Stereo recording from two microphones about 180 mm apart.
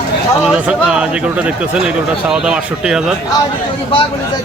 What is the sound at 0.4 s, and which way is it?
Speech, 5° right (ahead or behind).